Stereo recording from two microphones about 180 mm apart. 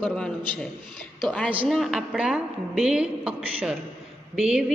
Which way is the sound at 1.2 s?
5° left (ahead or behind).